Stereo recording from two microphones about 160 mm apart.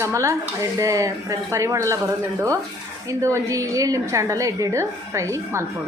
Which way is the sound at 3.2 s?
20° right (ahead or behind).